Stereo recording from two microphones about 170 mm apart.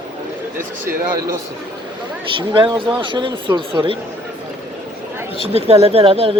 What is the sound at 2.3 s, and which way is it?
Speech, 30° right (ahead or behind).